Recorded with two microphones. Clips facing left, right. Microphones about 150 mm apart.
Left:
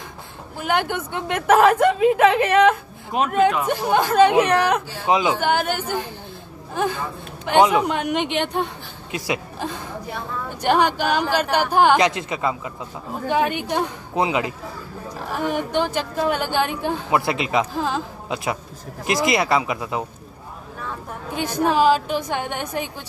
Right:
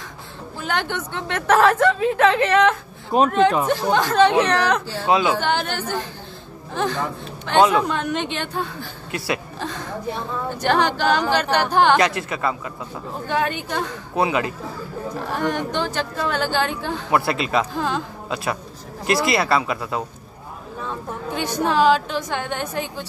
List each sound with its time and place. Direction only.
0.6 s a man's voice: 10° left (ahead or behind)
15.3 s speech: 5° left (ahead or behind)
17.7 s speech: 5° left (ahead or behind)
18.3 s speech: 20° left (ahead or behind)
21.4 s speech: 10° left (ahead or behind)